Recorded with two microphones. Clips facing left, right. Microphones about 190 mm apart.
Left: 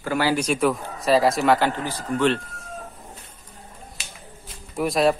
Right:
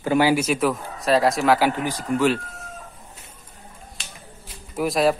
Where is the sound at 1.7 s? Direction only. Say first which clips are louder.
Right 3 dB; 15° right (ahead or behind).